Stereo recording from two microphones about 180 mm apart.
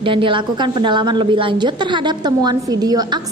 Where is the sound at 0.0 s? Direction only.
30° right (ahead or behind).